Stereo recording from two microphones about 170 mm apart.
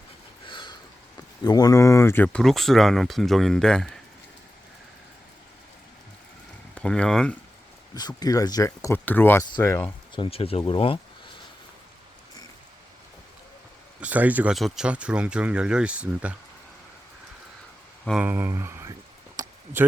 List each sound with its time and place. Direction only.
0.4 s a sound: 30° left (ahead or behind)
1.5 s speech: 20° left (ahead or behind); by 4.0 s 5° left (ahead or behind)
6.7 s speech: 5° left (ahead or behind)
7.9 s speech: 25° left (ahead or behind)
10.2 s speech: 35° left (ahead or behind)
14.0 s speech: 10° right (ahead or behind)
18.0 s speech: centre (ahead or behind)
18.3 s speech: 15° right (ahead or behind)
19.4 s a sound: 20° right (ahead or behind)